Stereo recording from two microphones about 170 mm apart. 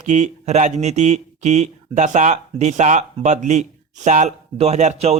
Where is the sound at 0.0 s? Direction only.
45° right (ahead or behind).